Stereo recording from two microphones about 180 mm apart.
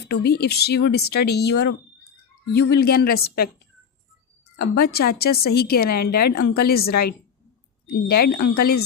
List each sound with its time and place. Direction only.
0.0 s speech: 65° left (ahead or behind)
4.5 s speech: 65° left (ahead or behind)
8.0 s speech: 60° left (ahead or behind)